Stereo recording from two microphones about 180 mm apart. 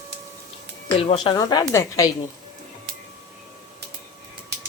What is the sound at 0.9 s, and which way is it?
A woman's voice, 30° left (ahead or behind).